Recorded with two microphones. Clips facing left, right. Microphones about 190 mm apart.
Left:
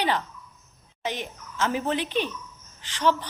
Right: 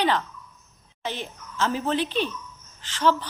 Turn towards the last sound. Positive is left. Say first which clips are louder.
# right 1 dB
turn(degrees=15)  # may be behind; listen again after turning